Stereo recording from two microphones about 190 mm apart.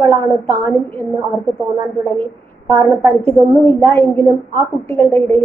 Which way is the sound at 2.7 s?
15° left (ahead or behind).